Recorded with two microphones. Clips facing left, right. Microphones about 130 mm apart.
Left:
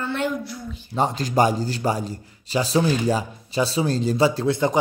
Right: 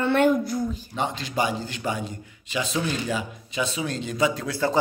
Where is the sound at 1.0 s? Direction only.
40° left (ahead or behind); by 4.8 s 20° left (ahead or behind).